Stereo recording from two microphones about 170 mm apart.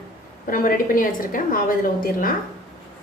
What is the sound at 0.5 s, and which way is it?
A woman's voice, 55° left (ahead or behind).